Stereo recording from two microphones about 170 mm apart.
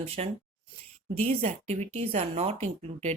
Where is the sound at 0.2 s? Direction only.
40° right (ahead or behind).